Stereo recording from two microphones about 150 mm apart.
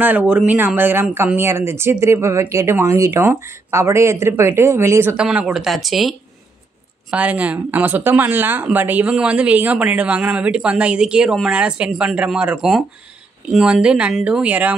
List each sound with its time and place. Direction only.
0.0 s speech: 10° right (ahead or behind)
5.1 s speech: 5° right (ahead or behind)